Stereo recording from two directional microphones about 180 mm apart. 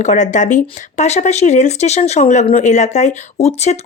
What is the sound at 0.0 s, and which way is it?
Speech, 40° left (ahead or behind).